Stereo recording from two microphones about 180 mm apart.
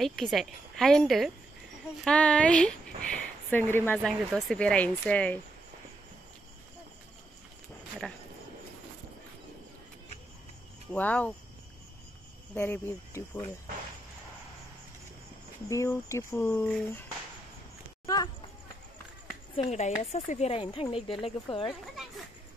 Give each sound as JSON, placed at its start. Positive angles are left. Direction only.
{"t": 0.0, "sound": "speech", "side_deg": 0}
{"t": 10.9, "sound": "speech", "side_deg": 10}
{"t": 12.5, "sound": "speech", "side_deg": 10}
{"t": 15.7, "sound": "speech", "side_deg": 15}
{"t": 18.0, "sound": "speech", "side_deg": 20}
{"t": 19.5, "sound": "speech", "side_deg": 35}